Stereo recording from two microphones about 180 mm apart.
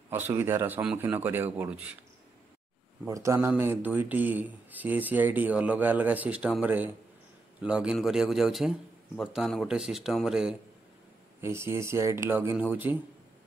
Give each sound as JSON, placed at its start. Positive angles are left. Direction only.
{"t": 0.1, "sound": "speech", "side_deg": -10}
{"t": 3.1, "sound": "speech", "side_deg": -15}
{"t": 11.4, "sound": "speech", "side_deg": -15}